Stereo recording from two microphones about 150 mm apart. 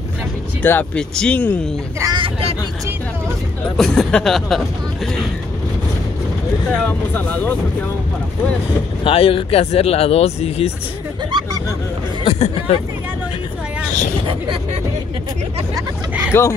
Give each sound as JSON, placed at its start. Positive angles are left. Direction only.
{"t": 0.6, "sound": "speech", "side_deg": 10}
{"t": 2.0, "sound": "speech", "side_deg": -25}
{"t": 3.7, "sound": "speech", "side_deg": 0}
{"t": 6.9, "sound": "speech", "side_deg": 10}
{"t": 9.0, "sound": "speech", "side_deg": 40}
{"t": 12.3, "sound": "speech", "side_deg": 40}
{"t": 16.3, "sound": "speech", "side_deg": 15}